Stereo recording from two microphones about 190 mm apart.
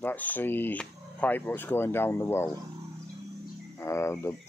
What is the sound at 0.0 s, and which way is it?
Speech, 10° left (ahead or behind).